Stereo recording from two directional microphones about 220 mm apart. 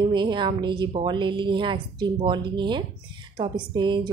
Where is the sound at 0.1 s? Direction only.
20° right (ahead or behind).